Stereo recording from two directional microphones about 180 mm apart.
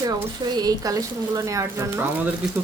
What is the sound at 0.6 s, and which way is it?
Speech, 20° right (ahead or behind).